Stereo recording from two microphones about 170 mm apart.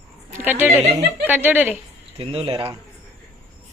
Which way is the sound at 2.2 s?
30° right (ahead or behind).